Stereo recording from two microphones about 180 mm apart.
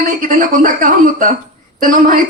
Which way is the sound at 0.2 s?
50° right (ahead or behind).